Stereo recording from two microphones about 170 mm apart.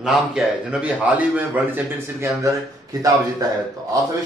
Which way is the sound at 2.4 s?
20° right (ahead or behind).